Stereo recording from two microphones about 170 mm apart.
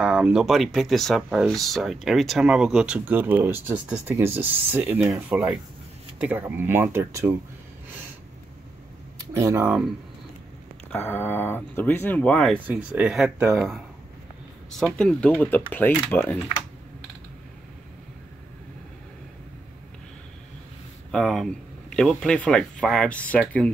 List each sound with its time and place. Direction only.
0.0 s speech: 5° right (ahead or behind)
9.4 s speech: 15° right (ahead or behind)
10.9 s speech: 10° left (ahead or behind)
12.5 s speech: 10° right (ahead or behind)
15.0 s speech: 5° left (ahead or behind)
21.1 s speech: centre (ahead or behind)